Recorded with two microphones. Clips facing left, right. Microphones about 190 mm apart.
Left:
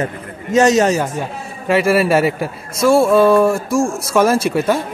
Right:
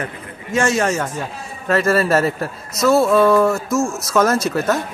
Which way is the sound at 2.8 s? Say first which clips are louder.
Left 2 dB; 30° left (ahead or behind).